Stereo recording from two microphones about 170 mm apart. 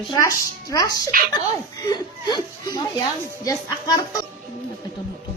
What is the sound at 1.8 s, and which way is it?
Chuckle, 25° left (ahead or behind).